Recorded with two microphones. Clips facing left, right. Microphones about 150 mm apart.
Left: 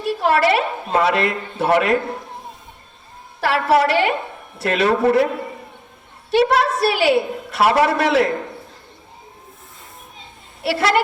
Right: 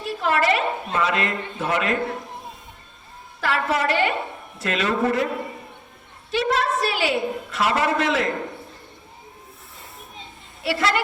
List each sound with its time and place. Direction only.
0.2 s a woman's voice: 65° left (ahead or behind)
3.4 s a woman's voice: 65° left (ahead or behind)
6.3 s a woman's voice: 65° left (ahead or behind)
10.6 s a woman's voice: 65° left (ahead or behind)